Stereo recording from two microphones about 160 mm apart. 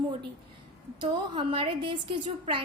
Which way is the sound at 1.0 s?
35° right (ahead or behind).